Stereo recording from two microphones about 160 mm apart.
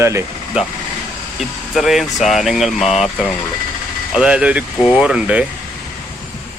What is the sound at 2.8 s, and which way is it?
Speech, 45° left (ahead or behind).